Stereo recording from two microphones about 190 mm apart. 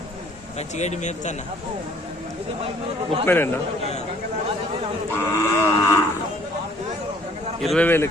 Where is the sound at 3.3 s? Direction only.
10° left (ahead or behind).